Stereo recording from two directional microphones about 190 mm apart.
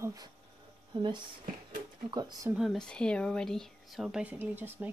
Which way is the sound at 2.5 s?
Centre (ahead or behind).